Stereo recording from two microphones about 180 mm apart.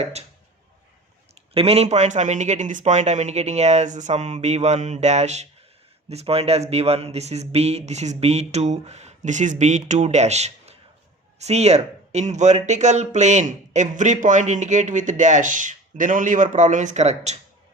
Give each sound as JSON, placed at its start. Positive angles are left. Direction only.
{"t": 0.0, "sound": "speech", "side_deg": -35}
{"t": 1.4, "sound": "speech", "side_deg": -35}